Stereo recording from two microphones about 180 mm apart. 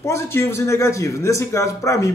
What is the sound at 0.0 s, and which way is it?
A man's voice, 15° left (ahead or behind).